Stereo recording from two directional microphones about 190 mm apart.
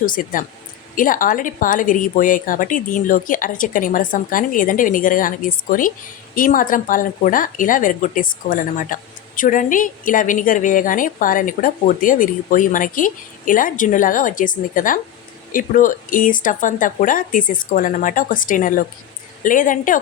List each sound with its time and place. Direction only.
0.0 s speech: 45° left (ahead or behind)